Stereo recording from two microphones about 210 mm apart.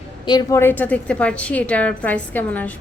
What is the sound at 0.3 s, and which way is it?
A woman's voice, 15° left (ahead or behind).